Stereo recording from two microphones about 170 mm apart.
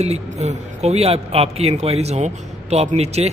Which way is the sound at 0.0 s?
40° right (ahead or behind).